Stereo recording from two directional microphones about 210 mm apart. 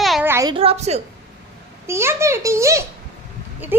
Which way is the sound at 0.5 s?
30° right (ahead or behind).